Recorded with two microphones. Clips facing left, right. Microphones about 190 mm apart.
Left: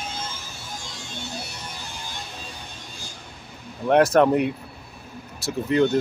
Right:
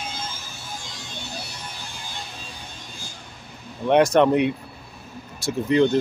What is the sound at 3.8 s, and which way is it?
Speech, 5° left (ahead or behind).